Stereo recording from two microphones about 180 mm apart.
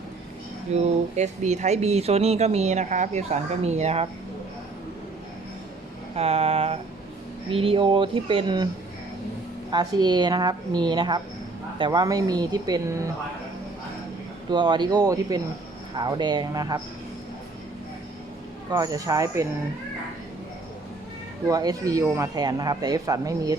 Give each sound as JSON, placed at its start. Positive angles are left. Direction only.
{"t": 0.7, "sound": "speech", "side_deg": -40}
{"t": 6.1, "sound": "speech", "side_deg": -35}
{"t": 9.7, "sound": "speech", "side_deg": -25}
{"t": 14.5, "sound": "speech", "side_deg": -25}
{"t": 18.7, "sound": "speech", "side_deg": -20}
{"t": 21.4, "sound": "speech", "side_deg": -20}